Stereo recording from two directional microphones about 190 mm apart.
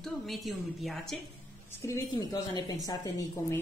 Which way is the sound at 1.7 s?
15° left (ahead or behind).